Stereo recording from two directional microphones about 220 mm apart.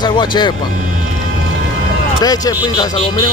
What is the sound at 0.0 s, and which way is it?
Speech, 20° left (ahead or behind).